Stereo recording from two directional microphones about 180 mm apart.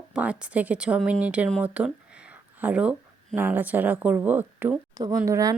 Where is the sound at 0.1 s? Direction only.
5° right (ahead or behind).